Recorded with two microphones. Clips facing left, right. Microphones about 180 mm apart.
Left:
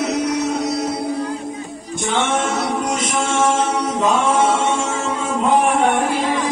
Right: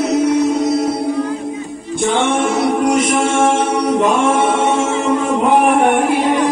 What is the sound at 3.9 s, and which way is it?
A capella, 60° right (ahead or behind).